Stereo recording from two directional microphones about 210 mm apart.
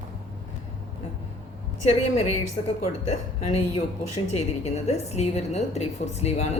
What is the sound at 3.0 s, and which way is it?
A woman's voice, 30° left (ahead or behind).